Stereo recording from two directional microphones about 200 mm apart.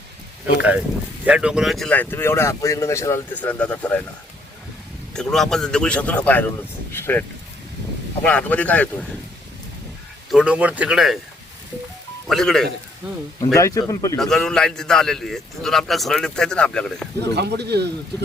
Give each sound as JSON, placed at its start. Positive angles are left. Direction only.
{"t": 1.2, "sound": "speech", "side_deg": -5}
{"t": 5.1, "sound": "a man's voice", "side_deg": 5}
{"t": 10.3, "sound": "a man's voice", "side_deg": -5}
{"t": 12.3, "sound": "a man's voice", "side_deg": 0}
{"t": 13.4, "sound": "speech", "side_deg": 15}
{"t": 14.2, "sound": "a man's voice", "side_deg": 0}
{"t": 17.3, "sound": "speech", "side_deg": -55}